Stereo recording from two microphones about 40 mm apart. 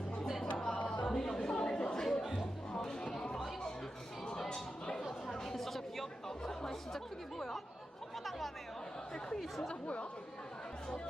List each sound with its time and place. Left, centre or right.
0.5 s a sound: centre
0.9 s chatter: centre
2.0 s music: centre
4.3 s a sound: centre
5.3 s chatter: centre
9.8 s speech: left